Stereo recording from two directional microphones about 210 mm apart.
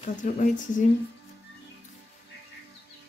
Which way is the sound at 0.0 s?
35° left (ahead or behind).